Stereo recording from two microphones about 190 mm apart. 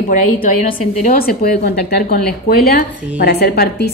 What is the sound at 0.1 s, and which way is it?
A woman's voice, 40° left (ahead or behind).